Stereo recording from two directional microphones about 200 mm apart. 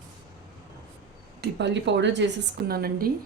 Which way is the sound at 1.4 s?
60° right (ahead or behind).